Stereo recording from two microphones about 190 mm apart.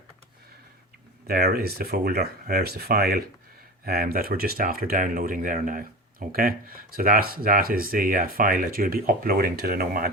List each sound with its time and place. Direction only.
1.3 s speech: 55° right (ahead or behind)